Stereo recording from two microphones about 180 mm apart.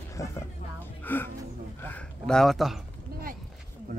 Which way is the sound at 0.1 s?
15° left (ahead or behind).